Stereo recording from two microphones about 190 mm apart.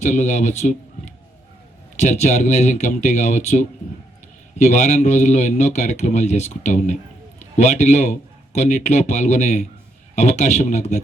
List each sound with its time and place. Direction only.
0.0 s speech: 40° left (ahead or behind)
2.0 s speech: 35° left (ahead or behind)